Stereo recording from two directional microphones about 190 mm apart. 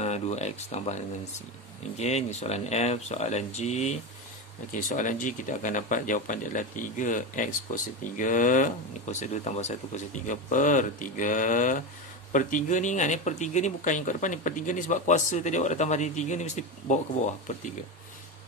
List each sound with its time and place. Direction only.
0.0 s speech: 35° left (ahead or behind)
2.0 s speech: 35° left (ahead or behind)